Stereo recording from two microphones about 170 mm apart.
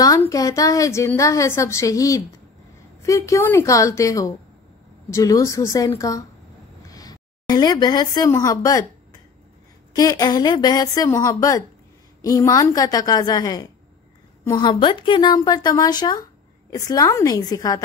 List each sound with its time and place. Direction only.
0.2 s a woman's voice: 20° left (ahead or behind)
9.9 s a woman's voice: 20° left (ahead or behind)